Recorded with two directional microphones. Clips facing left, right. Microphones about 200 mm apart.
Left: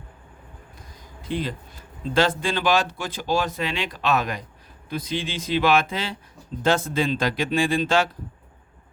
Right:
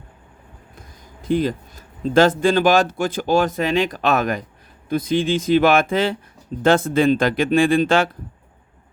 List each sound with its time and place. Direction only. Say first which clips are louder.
1.3 s speech: right 8 dB; 45° right (ahead or behind)